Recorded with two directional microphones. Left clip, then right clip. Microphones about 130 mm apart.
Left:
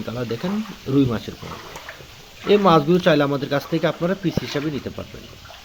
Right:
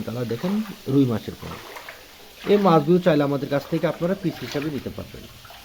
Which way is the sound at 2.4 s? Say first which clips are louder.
Left 2 dB; 5° right (ahead or behind).